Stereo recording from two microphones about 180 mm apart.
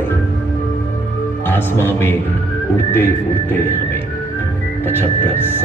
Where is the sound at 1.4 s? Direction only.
10° left (ahead or behind).